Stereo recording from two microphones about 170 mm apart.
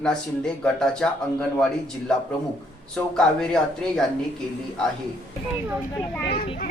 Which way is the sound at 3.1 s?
5° left (ahead or behind).